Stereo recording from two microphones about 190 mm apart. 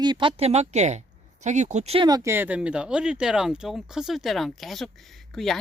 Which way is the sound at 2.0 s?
20° right (ahead or behind).